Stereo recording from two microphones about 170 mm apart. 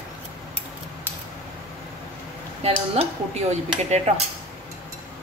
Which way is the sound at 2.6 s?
35° right (ahead or behind).